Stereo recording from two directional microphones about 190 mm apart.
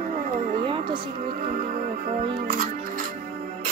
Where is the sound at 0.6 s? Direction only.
25° right (ahead or behind).